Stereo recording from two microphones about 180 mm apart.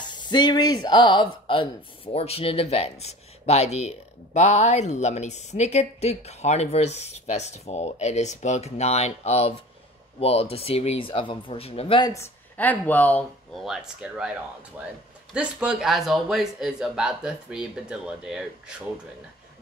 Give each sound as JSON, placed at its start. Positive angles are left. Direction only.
{"t": 0.0, "sound": "speech", "side_deg": 25}
{"t": 12.1, "sound": "a man's voice", "side_deg": 10}